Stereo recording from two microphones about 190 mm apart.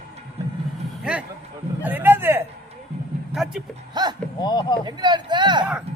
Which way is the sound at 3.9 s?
20° right (ahead or behind).